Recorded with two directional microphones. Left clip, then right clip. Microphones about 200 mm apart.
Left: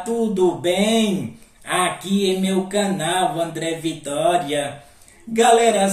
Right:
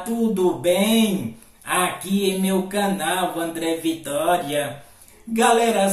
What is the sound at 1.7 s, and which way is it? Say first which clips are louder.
Speech: left 1 dB; centre (ahead or behind).